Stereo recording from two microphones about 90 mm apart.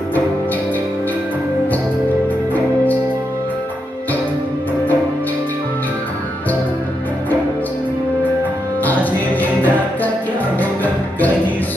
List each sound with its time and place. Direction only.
8.8 s music: 20° left (ahead or behind)